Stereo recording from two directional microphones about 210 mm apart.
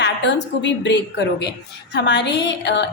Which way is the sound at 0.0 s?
55° left (ahead or behind).